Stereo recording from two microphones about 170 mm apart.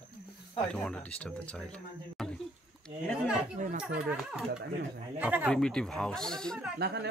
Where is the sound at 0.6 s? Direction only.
5° left (ahead or behind).